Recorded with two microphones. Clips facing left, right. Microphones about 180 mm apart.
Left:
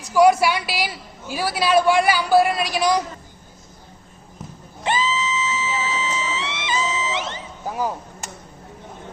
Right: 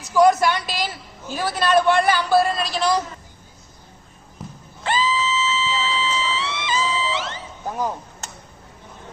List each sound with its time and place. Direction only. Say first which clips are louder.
0.1 s a woman's voice: left 1 dB; 10° left (ahead or behind)
4.8 s music: even; 20° left (ahead or behind)
7.6 s chop: even; 5° left (ahead or behind)